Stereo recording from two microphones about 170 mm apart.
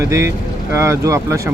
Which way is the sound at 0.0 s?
15° right (ahead or behind).